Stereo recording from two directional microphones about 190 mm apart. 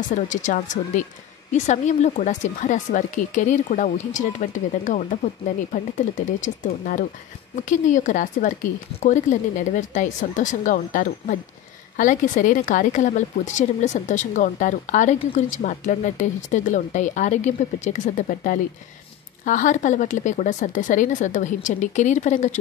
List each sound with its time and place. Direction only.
0.1 s speech: 40° left (ahead or behind)